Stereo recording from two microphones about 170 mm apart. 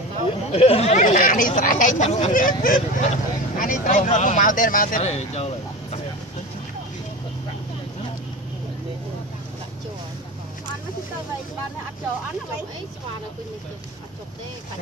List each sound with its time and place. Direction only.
0.5 s speech: 35° left (ahead or behind)
2.3 s speech: 55° left (ahead or behind)
5.0 s speech: 40° left (ahead or behind)